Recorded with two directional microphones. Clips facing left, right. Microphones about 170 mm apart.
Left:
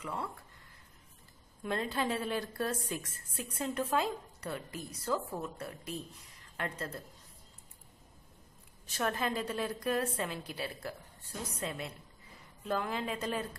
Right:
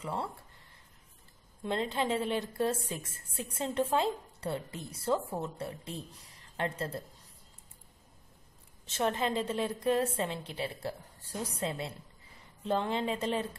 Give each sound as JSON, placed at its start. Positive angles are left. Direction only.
{"t": 0.0, "sound": "a woman's voice", "side_deg": -30}
{"t": 1.6, "sound": "a woman's voice", "side_deg": -25}
{"t": 8.8, "sound": "a woman's voice", "side_deg": -25}